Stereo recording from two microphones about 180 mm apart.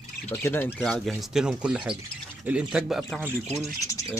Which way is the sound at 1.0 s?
Centre (ahead or behind).